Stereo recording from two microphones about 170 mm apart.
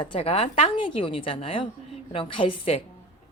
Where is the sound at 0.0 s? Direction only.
30° left (ahead or behind).